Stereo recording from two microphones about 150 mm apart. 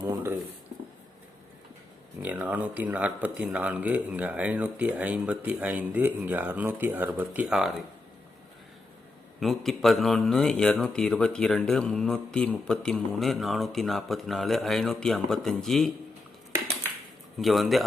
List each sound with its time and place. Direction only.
0.0 s speech: 20° right (ahead or behind)
2.2 s speech: 10° right (ahead or behind)
9.4 s speech: centre (ahead or behind)
17.3 s speech: centre (ahead or behind)